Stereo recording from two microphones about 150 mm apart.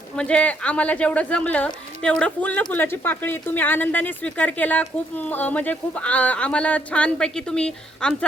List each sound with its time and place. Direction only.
0.2 s a woman's voice: 5° left (ahead or behind)